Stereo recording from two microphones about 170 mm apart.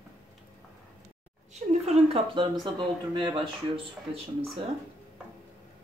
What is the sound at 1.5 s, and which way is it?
Speech, 40° right (ahead or behind).